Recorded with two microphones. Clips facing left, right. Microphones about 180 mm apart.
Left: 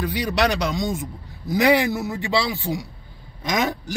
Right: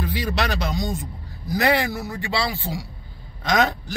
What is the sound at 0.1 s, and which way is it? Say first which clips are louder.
A man's voice: left 4 dB; 15° left (ahead or behind).